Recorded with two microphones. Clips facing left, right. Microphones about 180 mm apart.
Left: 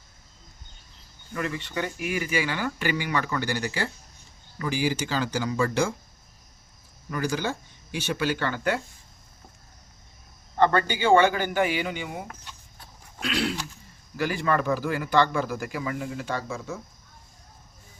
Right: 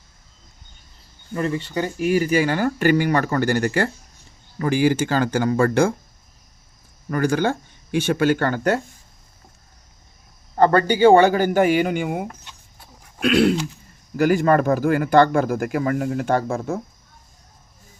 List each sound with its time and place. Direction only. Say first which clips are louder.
1.3 s speech: right 7 dB; 35° right (ahead or behind); by 5.9 s 55° right (ahead or behind)
7.1 s speech: right 8 dB; 55° right (ahead or behind)
10.5 s a man's voice: right 6 dB; 40° right (ahead or behind)